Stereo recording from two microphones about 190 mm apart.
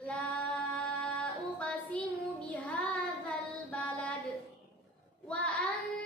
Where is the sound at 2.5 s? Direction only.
10° left (ahead or behind).